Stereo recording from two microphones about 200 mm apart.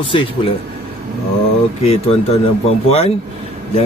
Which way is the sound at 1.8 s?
30° left (ahead or behind).